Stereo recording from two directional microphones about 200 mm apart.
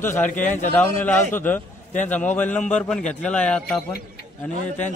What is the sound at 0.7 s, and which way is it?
A man's voice, 10° left (ahead or behind).